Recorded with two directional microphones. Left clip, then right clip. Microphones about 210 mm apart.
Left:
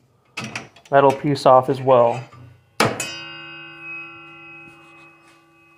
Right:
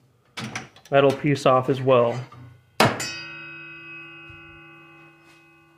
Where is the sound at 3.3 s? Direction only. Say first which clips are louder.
Left 2 dB; 5° left (ahead or behind).